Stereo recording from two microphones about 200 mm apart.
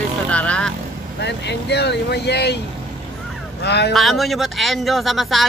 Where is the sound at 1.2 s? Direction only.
60° left (ahead or behind).